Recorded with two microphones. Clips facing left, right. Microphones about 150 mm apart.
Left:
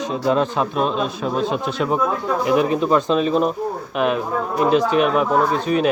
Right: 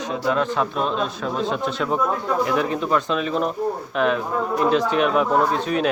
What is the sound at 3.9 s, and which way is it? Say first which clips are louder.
Speech: left 2 dB; 10° left (ahead or behind).